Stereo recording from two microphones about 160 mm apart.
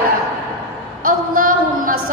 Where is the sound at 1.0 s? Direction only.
60° right (ahead or behind).